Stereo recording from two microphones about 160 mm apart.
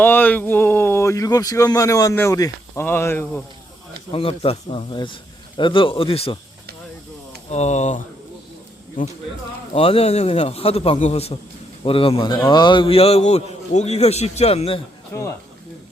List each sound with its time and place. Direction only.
0.0 s speech: 10° left (ahead or behind)
4.1 s a man's voice: 35° left (ahead or behind)
7.5 s speech: 45° left (ahead or behind)
9.7 s a man's voice: 35° left (ahead or behind)